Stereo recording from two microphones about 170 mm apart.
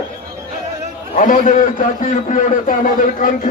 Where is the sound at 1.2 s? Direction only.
50° left (ahead or behind).